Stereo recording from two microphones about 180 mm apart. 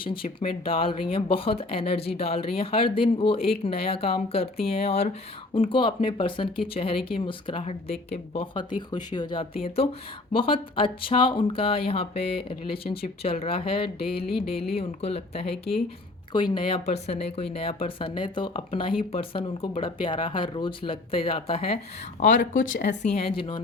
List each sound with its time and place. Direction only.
0.0 s speech: 30° left (ahead or behind)
22.7 s speech: 45° left (ahead or behind)